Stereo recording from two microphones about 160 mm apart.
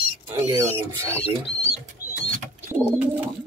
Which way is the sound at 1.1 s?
40° left (ahead or behind).